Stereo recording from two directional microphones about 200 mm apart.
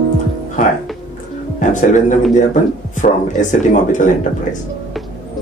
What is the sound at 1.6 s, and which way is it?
Speech, 40° left (ahead or behind).